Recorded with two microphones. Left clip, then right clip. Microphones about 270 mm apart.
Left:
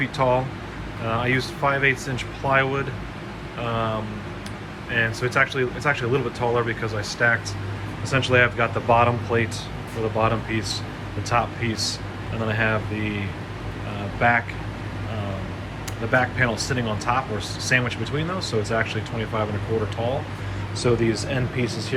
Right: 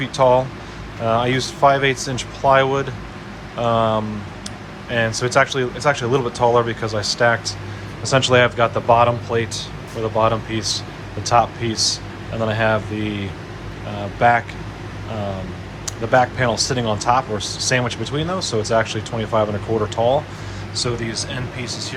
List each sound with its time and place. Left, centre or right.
0.0 s speech: centre
15.9 s speech: centre
20.7 s speech: centre